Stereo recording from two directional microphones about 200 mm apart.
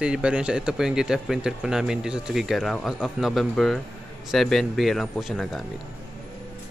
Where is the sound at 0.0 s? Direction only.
5° right (ahead or behind).